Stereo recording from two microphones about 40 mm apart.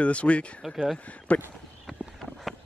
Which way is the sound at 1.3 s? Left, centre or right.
Left.